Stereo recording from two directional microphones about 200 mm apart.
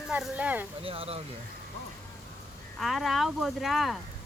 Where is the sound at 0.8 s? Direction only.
30° right (ahead or behind).